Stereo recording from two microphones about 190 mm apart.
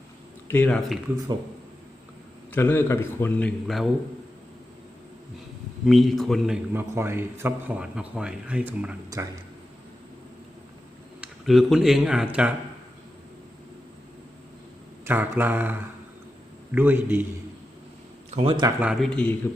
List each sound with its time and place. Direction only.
0.4 s a man's voice: 10° left (ahead or behind)
2.5 s a man's voice: 10° left (ahead or behind)
5.8 s a man's voice: centre (ahead or behind)
9.0 s speech: 20° right (ahead or behind)
11.2 s speech: centre (ahead or behind)
15.0 s speech: 10° right (ahead or behind)
16.7 s speech: 10° right (ahead or behind)
18.3 s speech: 30° right (ahead or behind)
18.8 s a man's voice: 5° right (ahead or behind)